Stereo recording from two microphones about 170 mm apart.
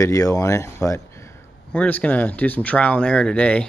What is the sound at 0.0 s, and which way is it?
Speech, 20° left (ahead or behind).